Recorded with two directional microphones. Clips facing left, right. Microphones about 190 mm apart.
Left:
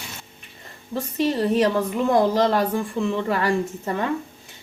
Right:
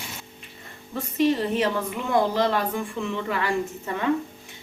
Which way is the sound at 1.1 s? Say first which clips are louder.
Left 1 dB; 40° left (ahead or behind).